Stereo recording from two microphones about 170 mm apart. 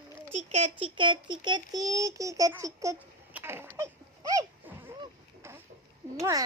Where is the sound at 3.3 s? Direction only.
15° right (ahead or behind).